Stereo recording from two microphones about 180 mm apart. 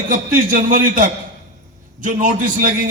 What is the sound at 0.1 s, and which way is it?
A man's voice, 50° right (ahead or behind).